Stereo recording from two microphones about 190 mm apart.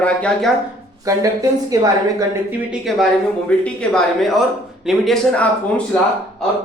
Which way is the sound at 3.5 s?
5° left (ahead or behind).